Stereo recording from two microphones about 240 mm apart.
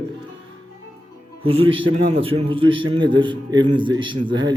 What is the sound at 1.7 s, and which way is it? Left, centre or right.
A man's voice, right.